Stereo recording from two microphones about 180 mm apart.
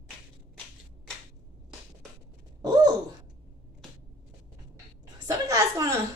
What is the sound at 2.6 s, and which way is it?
Gasp, 20° right (ahead or behind).